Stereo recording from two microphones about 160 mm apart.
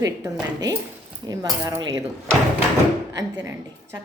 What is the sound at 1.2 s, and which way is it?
Speech, 25° right (ahead or behind).